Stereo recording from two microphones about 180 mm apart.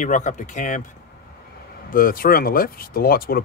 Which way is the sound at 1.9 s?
50° left (ahead or behind).